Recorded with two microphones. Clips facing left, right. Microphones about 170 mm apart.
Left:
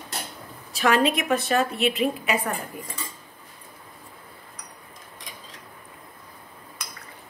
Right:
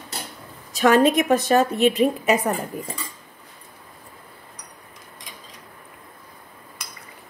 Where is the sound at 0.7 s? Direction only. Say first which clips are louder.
Right 5 dB; 45° right (ahead or behind).